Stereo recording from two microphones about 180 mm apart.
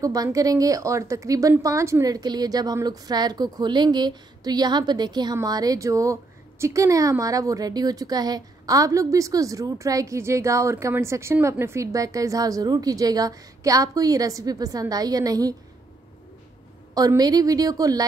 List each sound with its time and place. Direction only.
0.0 s a woman's voice: 20° right (ahead or behind)
16.9 s a woman's voice: 20° right (ahead or behind)